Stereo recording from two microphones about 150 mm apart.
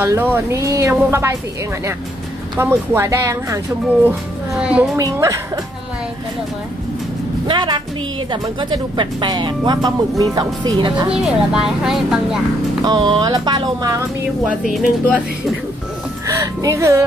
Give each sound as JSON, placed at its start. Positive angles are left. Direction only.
{"t": 0.0, "sound": "speech", "side_deg": -15}
{"t": 2.5, "sound": "speech", "side_deg": -15}
{"t": 4.6, "sound": "a woman's voice", "side_deg": -5}
{"t": 4.9, "sound": "speech", "side_deg": -20}
{"t": 7.4, "sound": "a woman's voice", "side_deg": -30}
{"t": 11.2, "sound": "speech", "side_deg": -5}
{"t": 12.8, "sound": "speech", "side_deg": -30}
{"t": 14.7, "sound": "speech", "side_deg": 0}
{"t": 16.3, "sound": "speech", "side_deg": -20}